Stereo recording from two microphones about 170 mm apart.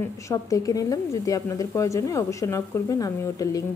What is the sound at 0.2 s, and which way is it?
A woman's voice, 20° left (ahead or behind).